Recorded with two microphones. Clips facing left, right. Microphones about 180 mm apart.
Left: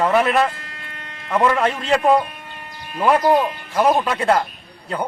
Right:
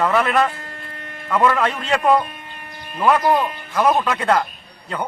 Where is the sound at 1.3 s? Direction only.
25° left (ahead or behind).